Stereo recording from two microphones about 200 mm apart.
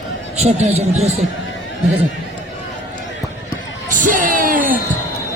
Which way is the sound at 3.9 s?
40° right (ahead or behind).